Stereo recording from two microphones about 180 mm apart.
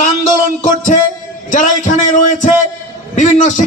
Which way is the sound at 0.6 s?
45° left (ahead or behind).